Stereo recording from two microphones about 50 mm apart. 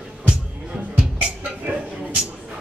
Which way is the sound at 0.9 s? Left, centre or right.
Centre.